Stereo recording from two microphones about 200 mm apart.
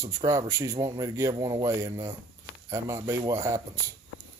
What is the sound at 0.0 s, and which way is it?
Speech, 15° right (ahead or behind).